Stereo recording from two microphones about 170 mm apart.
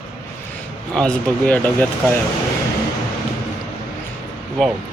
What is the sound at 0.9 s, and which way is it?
Speech, 5° left (ahead or behind).